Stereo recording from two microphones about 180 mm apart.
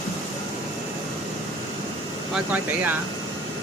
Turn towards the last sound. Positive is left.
turn(degrees=-10)  # may be behind; listen again after turning